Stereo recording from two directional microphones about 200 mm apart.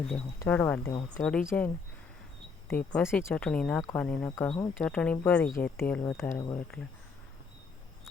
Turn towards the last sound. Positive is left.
turn(degrees=10)  # may be behind; listen again after turning